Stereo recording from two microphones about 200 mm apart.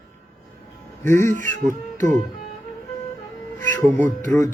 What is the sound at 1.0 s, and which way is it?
Male singing, 15° left (ahead or behind).